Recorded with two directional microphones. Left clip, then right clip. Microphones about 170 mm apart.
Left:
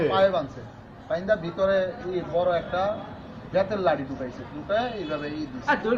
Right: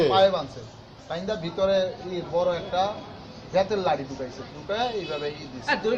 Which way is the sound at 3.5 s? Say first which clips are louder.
Even; 25° right (ahead or behind).